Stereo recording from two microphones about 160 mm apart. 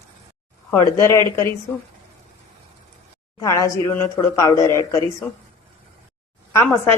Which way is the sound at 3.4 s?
20° left (ahead or behind).